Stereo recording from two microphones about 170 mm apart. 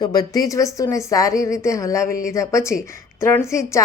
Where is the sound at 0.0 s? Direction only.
20° left (ahead or behind).